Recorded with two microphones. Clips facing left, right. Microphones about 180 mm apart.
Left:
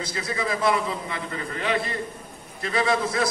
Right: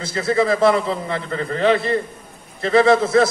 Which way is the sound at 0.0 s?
50° right (ahead or behind).